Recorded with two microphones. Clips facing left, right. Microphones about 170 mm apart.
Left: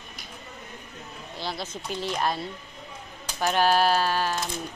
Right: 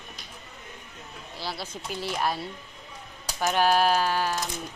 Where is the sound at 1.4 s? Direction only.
5° right (ahead or behind).